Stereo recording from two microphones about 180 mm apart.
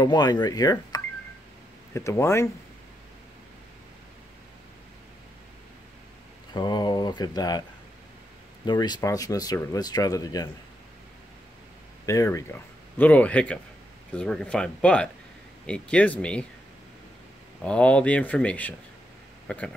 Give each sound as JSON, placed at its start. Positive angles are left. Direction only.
{"t": 0.0, "sound": "speech", "side_deg": 20}
{"t": 6.5, "sound": "speech", "side_deg": 25}
{"t": 8.6, "sound": "speech", "side_deg": 25}
{"t": 12.1, "sound": "speech", "side_deg": 15}
{"t": 17.6, "sound": "speech", "side_deg": 5}